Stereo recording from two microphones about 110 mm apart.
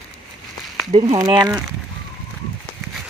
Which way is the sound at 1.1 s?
40° right (ahead or behind).